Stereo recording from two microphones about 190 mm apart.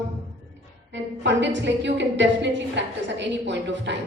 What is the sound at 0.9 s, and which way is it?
A woman's voice, 70° right (ahead or behind).